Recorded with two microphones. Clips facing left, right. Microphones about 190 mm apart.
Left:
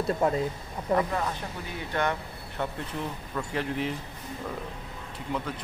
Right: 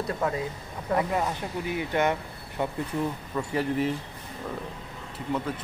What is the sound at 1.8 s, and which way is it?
Speech, 15° right (ahead or behind).